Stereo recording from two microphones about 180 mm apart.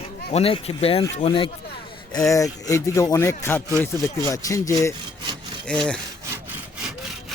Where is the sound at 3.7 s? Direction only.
15° right (ahead or behind).